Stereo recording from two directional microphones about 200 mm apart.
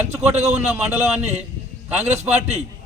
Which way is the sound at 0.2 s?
35° right (ahead or behind).